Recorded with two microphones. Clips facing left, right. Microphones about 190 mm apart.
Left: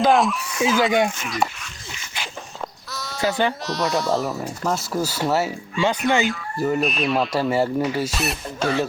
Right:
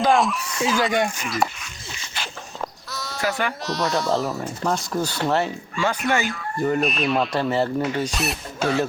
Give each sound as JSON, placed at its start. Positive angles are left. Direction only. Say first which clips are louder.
{"t": 0.0, "sound": "speech", "louder": "left 2 dB", "side_deg": 0}
{"t": 2.9, "sound": "a sound", "louder": "even", "side_deg": 0}
{"t": 3.2, "sound": "speech", "louder": "left 4 dB", "side_deg": 20}
{"t": 3.6, "sound": "speech", "louder": "left 1 dB", "side_deg": 0}
{"t": 5.7, "sound": "speech", "louder": "left 3 dB", "side_deg": 20}
{"t": 6.2, "sound": "speech", "louder": "left 1 dB", "side_deg": 0}